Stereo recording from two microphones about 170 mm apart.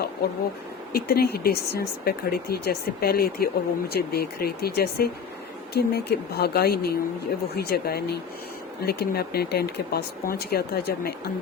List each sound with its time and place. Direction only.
0.9 s speech: 65° left (ahead or behind)